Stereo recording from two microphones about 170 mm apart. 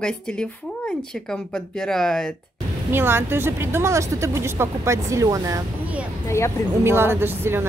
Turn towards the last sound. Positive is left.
turn(degrees=-15)  # may be behind; listen again after turning